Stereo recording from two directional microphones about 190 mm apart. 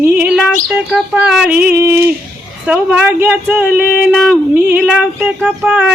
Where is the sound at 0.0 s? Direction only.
10° right (ahead or behind).